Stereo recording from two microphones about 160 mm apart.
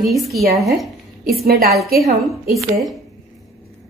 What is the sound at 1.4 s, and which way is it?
Speech, 70° right (ahead or behind).